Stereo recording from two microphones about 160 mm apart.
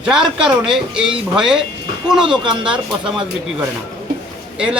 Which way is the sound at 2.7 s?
5° right (ahead or behind).